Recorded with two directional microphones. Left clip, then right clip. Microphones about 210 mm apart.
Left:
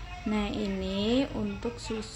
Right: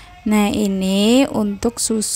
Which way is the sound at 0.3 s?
50° right (ahead or behind).